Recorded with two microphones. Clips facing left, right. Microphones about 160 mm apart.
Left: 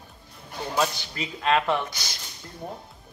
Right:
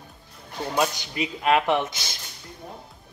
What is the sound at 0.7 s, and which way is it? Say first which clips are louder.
Speech: right 1 dB; 15° right (ahead or behind).